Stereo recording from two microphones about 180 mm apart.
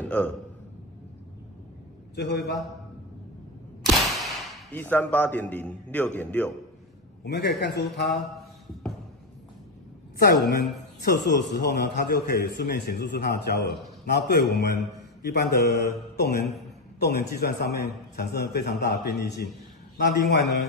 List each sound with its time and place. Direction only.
0.0 s a sound: 10° left (ahead or behind)
2.1 s a man's voice: 65° left (ahead or behind)
3.8 s a sound: centre (ahead or behind)
4.8 s a man's voice: 10° left (ahead or behind)
7.2 s speech: 75° left (ahead or behind)
10.1 s a woman's voice: 60° left (ahead or behind)